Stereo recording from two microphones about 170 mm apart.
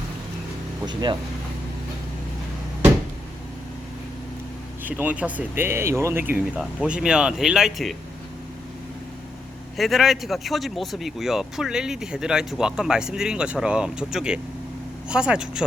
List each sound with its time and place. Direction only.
0.9 s speech: 25° right (ahead or behind)
4.8 s speech: 10° right (ahead or behind)
9.7 s speech: centre (ahead or behind)